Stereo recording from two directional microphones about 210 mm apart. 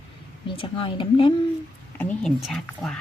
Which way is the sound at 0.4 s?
25° left (ahead or behind).